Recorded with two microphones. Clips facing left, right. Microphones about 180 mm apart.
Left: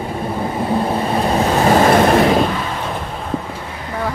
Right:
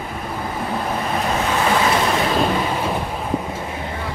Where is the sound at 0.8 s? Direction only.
30° left (ahead or behind); by 2.1 s 50° left (ahead or behind).